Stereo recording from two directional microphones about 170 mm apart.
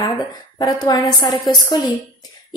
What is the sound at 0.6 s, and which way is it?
A woman's voice, 25° left (ahead or behind).